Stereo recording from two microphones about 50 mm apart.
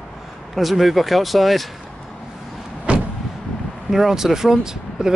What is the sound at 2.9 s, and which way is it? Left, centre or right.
Vehicle, right.